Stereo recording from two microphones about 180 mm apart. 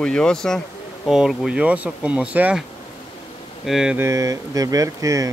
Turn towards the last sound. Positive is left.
turn(degrees=-20)  # may be behind; listen again after turning